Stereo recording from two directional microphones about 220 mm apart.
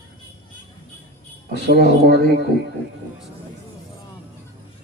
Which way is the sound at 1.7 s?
50° right (ahead or behind).